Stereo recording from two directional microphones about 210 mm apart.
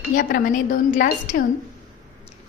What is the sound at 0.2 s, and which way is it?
A woman's voice, 40° left (ahead or behind).